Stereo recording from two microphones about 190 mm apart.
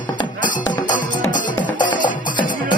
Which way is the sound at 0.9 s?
45° left (ahead or behind).